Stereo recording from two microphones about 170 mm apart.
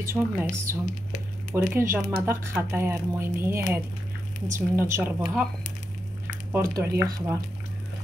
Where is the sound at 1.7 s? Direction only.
15° right (ahead or behind).